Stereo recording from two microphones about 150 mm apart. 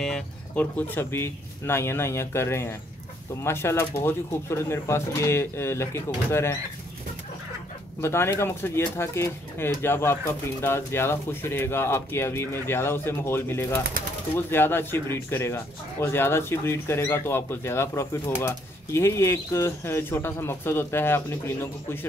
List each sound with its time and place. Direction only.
0.0 s speech: 5° left (ahead or behind)
8.0 s speech: 15° left (ahead or behind)